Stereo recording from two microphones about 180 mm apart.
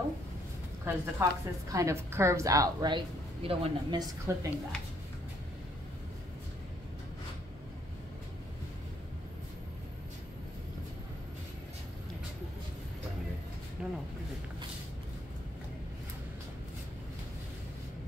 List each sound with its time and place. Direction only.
0.8 s a woman's voice: 15° right (ahead or behind)
3.4 s speech: 30° right (ahead or behind)
4.3 s a woman's voice: 15° right (ahead or behind)
13.8 s a sound: 5° right (ahead or behind)